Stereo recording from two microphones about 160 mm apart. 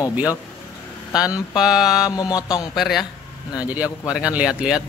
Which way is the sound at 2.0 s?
20° left (ahead or behind).